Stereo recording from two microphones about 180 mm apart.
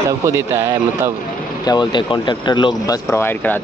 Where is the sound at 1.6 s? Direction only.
25° left (ahead or behind).